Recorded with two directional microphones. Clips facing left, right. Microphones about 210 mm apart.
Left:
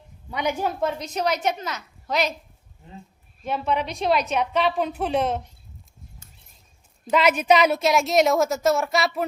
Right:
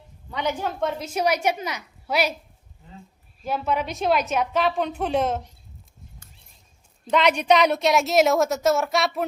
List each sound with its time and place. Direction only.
0.3 s a woman's voice: 10° left (ahead or behind)
0.8 s a woman's voice: centre (ahead or behind)
3.4 s a woman's voice: centre (ahead or behind)
7.1 s a woman's voice: 5° left (ahead or behind)